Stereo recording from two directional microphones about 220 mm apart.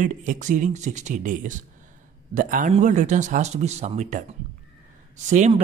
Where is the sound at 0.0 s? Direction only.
35° right (ahead or behind).